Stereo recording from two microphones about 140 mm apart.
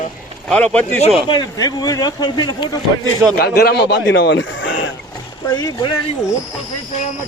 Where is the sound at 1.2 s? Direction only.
30° left (ahead or behind).